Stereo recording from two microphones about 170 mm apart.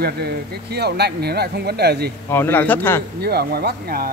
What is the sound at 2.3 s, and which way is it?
Speech, 10° left (ahead or behind).